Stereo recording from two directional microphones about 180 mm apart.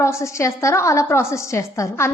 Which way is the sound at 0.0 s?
15° left (ahead or behind).